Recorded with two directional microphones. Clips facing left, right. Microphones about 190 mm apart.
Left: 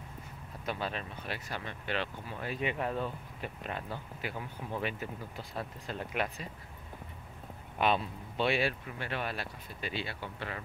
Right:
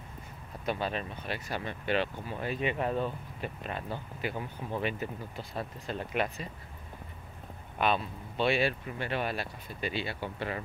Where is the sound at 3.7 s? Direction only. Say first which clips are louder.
Right 3 dB; 20° right (ahead or behind).